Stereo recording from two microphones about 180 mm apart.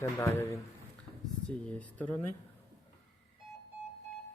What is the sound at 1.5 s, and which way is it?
Speech, 5° left (ahead or behind).